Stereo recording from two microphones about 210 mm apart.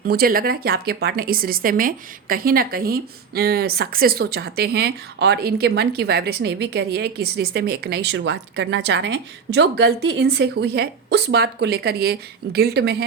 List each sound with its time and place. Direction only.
0.0 s speech: 45° right (ahead or behind)